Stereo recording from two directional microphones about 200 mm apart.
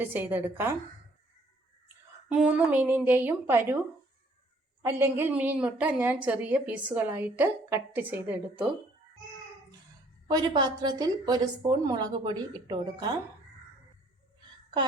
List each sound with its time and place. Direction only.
0.0 s a woman's voice: 10° right (ahead or behind)
2.3 s a woman's voice: 5° right (ahead or behind)
4.8 s a woman's voice: 10° right (ahead or behind)
10.2 s a woman's voice: 20° right (ahead or behind)